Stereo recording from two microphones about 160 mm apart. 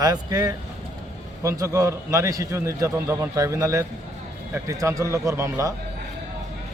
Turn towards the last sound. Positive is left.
turn(degrees=-20)  # may be behind; listen again after turning